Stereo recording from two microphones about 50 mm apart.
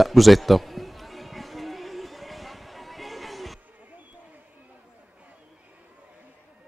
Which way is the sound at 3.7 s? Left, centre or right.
Right.